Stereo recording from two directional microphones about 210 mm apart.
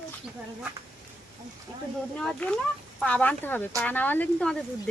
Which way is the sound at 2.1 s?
5° left (ahead or behind).